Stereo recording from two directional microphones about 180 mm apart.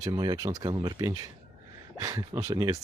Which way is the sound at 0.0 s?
20° right (ahead or behind).